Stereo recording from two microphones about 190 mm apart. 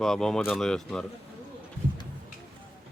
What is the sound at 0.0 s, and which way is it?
Speech, centre (ahead or behind).